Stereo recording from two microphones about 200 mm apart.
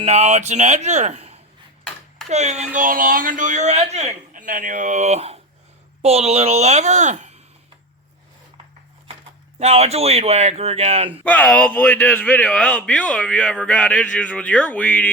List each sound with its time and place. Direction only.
0.0 s speech: 35° right (ahead or behind)
9.6 s speech: 35° right (ahead or behind)
11.2 s speech: 5° left (ahead or behind)